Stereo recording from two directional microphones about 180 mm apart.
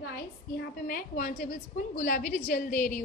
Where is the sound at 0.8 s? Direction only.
50° left (ahead or behind).